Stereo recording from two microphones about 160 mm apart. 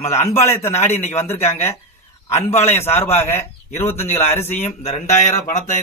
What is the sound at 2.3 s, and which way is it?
Speech, 40° left (ahead or behind).